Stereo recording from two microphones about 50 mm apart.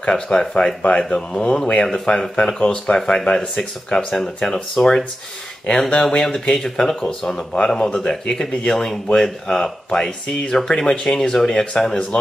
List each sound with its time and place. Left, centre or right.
0.1 s speech: centre